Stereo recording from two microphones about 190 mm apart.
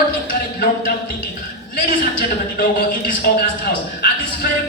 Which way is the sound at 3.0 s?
50° left (ahead or behind).